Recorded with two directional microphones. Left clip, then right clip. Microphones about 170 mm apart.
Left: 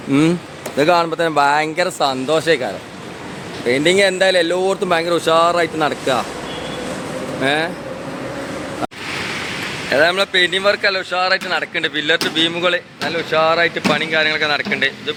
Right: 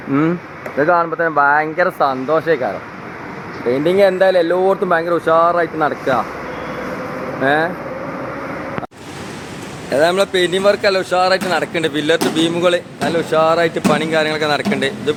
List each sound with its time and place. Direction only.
0.1 s speech: 30° left (ahead or behind)
3.7 s speech: 10° left (ahead or behind)
7.4 s speech: 10° left (ahead or behind)
9.9 s speech: 10° right (ahead or behind)
13.1 s speech: 20° right (ahead or behind)